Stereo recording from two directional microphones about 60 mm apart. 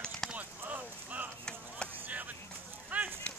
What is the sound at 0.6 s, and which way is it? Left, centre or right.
Clip-clop, right.